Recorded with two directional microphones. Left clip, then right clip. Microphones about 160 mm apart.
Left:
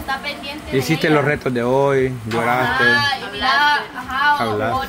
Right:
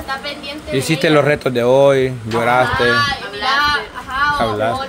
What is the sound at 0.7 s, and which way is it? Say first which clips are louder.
Speech: right 2 dB; 15° right (ahead or behind).